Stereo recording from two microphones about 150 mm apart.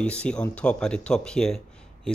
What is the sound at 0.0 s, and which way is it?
Speech, 10° left (ahead or behind).